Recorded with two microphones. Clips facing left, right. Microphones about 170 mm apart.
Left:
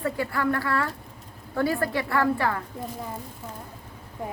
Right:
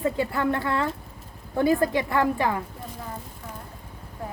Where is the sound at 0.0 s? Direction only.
20° right (ahead or behind).